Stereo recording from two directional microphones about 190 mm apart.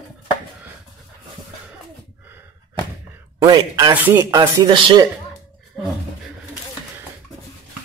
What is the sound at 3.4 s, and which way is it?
Speech, 20° right (ahead or behind).